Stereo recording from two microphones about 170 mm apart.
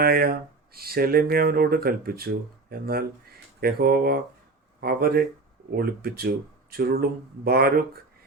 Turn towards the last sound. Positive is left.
turn(degrees=-65)  # may be behind; listen again after turning